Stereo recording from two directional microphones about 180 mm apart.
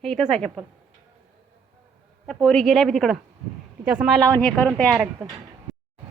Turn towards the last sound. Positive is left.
turn(degrees=5)  # may be behind; listen again after turning